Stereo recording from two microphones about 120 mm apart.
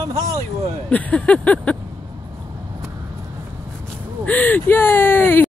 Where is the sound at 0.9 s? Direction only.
15° left (ahead or behind).